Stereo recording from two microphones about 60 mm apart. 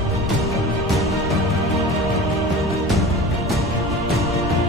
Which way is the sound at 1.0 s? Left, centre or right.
Centre.